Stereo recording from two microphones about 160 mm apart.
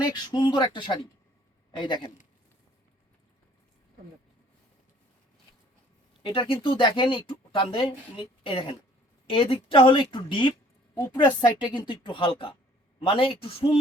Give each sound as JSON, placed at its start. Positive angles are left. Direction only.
{"t": 0.0, "sound": "speech", "side_deg": 25}
{"t": 6.2, "sound": "speech", "side_deg": 30}